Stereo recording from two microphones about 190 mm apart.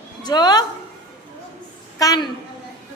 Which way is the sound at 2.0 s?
20° left (ahead or behind).